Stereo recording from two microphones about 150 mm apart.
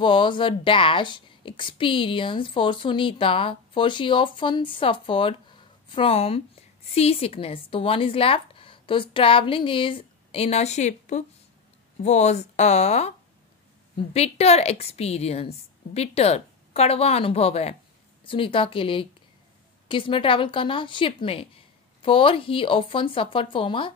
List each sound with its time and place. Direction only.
0.0 s a woman's voice: 35° left (ahead or behind)
14.1 s a woman's voice: 45° left (ahead or behind)